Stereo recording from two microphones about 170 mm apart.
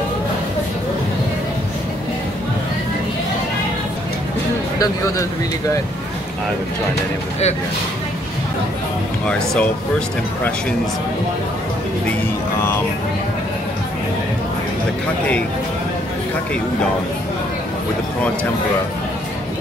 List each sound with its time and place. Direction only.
4.7 s speech: 20° left (ahead or behind)
9.2 s speech: 5° left (ahead or behind)